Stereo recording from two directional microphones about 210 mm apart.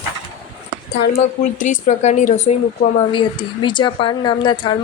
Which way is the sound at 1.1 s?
35° left (ahead or behind).